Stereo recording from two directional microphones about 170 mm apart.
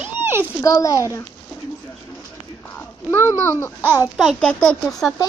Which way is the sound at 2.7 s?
10° left (ahead or behind).